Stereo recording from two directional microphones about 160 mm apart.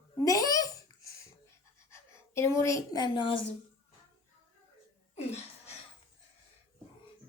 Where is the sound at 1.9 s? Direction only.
15° left (ahead or behind).